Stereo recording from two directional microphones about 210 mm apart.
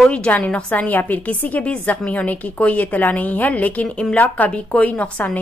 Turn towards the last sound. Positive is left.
turn(degrees=5)  # may be behind; listen again after turning